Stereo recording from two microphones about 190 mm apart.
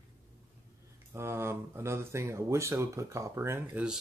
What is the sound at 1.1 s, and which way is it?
Speech, 15° right (ahead or behind).